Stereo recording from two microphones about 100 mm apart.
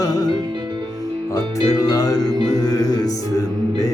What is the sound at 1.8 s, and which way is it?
Music, 40° left (ahead or behind).